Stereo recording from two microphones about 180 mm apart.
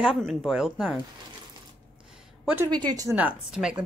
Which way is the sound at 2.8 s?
20° right (ahead or behind).